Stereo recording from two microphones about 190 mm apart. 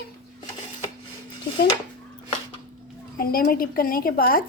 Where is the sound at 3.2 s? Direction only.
50° left (ahead or behind).